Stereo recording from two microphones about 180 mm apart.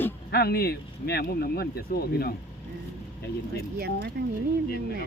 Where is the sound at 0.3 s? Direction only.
60° left (ahead or behind).